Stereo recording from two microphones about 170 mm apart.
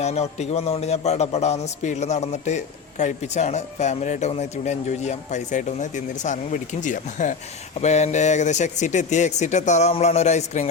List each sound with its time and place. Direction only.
0.0 s a man's voice: 40° left (ahead or behind)